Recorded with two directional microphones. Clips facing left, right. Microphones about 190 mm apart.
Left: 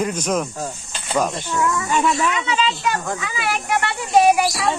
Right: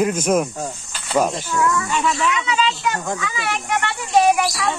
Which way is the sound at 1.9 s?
45° left (ahead or behind).